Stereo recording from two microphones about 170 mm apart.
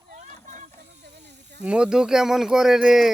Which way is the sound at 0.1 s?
45° right (ahead or behind).